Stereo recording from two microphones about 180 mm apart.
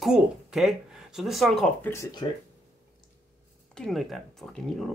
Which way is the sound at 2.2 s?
25° left (ahead or behind).